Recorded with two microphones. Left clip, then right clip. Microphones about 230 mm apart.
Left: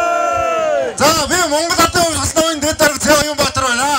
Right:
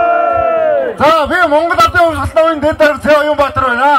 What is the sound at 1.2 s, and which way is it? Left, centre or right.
A man's voice, left.